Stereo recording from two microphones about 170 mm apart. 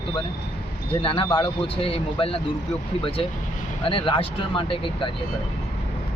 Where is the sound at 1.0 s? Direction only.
30° left (ahead or behind).